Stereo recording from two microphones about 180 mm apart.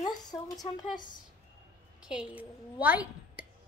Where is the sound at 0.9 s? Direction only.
45° left (ahead or behind).